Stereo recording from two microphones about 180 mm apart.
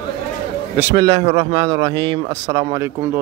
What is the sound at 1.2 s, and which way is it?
A man's voice, 35° right (ahead or behind).